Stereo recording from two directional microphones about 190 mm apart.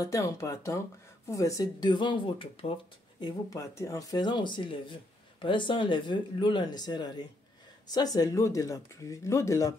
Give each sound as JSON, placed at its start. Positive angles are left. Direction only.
{"t": 0.0, "sound": "speech", "side_deg": 15}